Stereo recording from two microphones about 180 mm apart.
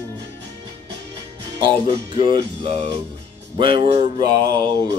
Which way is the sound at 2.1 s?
25° right (ahead or behind).